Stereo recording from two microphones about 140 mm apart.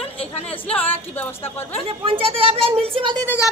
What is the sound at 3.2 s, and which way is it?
Music, 15° left (ahead or behind).